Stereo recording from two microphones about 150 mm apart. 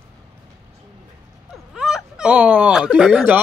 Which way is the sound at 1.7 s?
5° right (ahead or behind).